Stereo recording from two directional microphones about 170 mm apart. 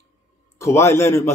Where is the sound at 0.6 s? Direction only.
15° left (ahead or behind).